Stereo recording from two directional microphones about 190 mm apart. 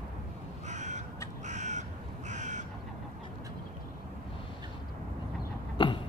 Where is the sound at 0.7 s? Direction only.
40° right (ahead or behind).